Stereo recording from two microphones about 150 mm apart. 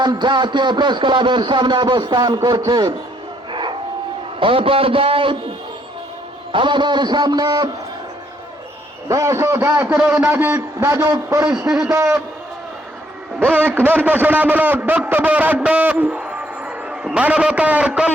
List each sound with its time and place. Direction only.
0.0 s speech: 30° right (ahead or behind)
3.5 s a sound: 30° right (ahead or behind)
4.4 s speech: 35° right (ahead or behind)
6.5 s a man's voice: 35° right (ahead or behind)
9.0 s a man's voice: 20° right (ahead or behind)
13.4 s a man's voice: 10° right (ahead or behind)